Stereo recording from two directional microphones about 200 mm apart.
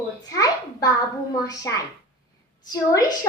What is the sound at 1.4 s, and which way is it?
A woman's voice, 15° left (ahead or behind).